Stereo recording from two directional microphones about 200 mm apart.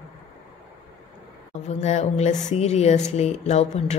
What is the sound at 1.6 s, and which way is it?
A woman's voice, 35° left (ahead or behind).